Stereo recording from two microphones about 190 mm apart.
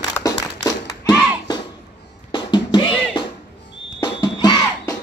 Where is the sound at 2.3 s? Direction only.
25° left (ahead or behind).